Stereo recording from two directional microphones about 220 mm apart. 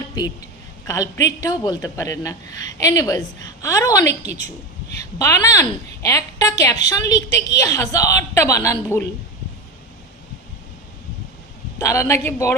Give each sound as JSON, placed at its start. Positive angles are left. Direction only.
{"t": 0.9, "sound": "a woman's voice", "side_deg": 15}
{"t": 5.2, "sound": "a woman's voice", "side_deg": 15}
{"t": 11.8, "sound": "a woman's voice", "side_deg": 15}